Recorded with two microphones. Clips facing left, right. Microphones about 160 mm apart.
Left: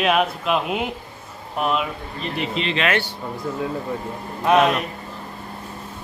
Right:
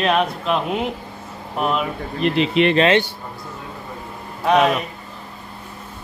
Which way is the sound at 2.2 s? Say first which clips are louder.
Right 9 dB; 70° right (ahead or behind).